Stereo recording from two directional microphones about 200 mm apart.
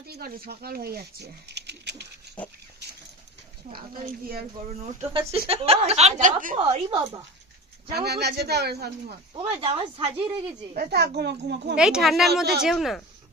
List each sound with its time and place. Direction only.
0.0 s speech: 50° right (ahead or behind)
4.7 s a woman's voice: 35° right (ahead or behind)
6.9 s speech: 20° right (ahead or behind)
7.9 s speech: 55° right (ahead or behind)
9.3 s speech: 25° right (ahead or behind)
10.8 s a child's voice: 55° right (ahead or behind)
11.8 s speech: 5° right (ahead or behind)